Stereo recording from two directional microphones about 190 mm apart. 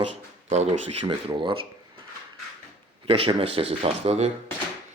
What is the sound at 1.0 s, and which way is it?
Speech, 25° right (ahead or behind).